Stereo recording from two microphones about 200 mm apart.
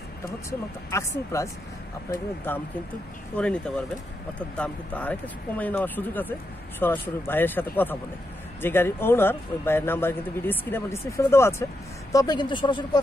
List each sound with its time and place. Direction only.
0.5 s speech: 15° left (ahead or behind)